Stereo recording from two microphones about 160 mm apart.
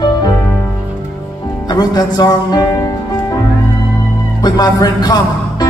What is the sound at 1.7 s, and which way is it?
Music, 25° left (ahead or behind).